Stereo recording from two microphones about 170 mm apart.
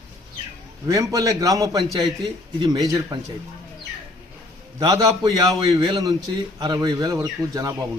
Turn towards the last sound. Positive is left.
turn(degrees=-20)  # may be behind; listen again after turning